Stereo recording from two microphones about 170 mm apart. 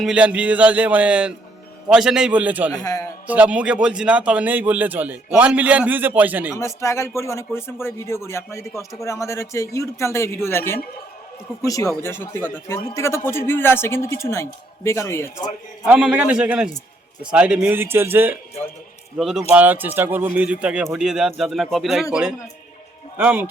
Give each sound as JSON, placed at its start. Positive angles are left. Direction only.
{"t": 0.0, "sound": "a man's voice", "side_deg": -5}
{"t": 2.7, "sound": "a man's voice", "side_deg": 20}
{"t": 3.2, "sound": "a man's voice", "side_deg": -10}
{"t": 6.5, "sound": "speech", "side_deg": 15}
{"t": 15.9, "sound": "a man's voice", "side_deg": -5}